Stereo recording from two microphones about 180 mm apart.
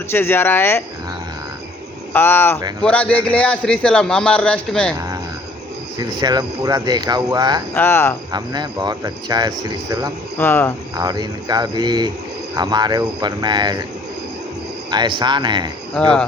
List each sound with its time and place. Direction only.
0.1 s speech: 15° left (ahead or behind)
2.1 s a man's voice: 10° left (ahead or behind)
6.0 s speech: 25° right (ahead or behind)
7.7 s speech: 10° left (ahead or behind)
8.3 s speech: 25° right (ahead or behind)
10.3 s speech: 10° left (ahead or behind)
10.9 s speech: 20° right (ahead or behind)
14.8 s speech: 25° right (ahead or behind)
16.0 s a man's voice: 5° left (ahead or behind)